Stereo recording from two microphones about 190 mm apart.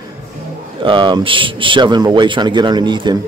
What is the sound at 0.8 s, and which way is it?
Speech, 25° right (ahead or behind).